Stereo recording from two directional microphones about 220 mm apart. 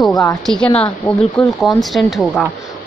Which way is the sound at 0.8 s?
5° left (ahead or behind).